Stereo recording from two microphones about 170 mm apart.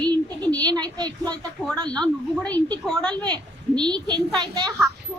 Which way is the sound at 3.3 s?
25° right (ahead or behind).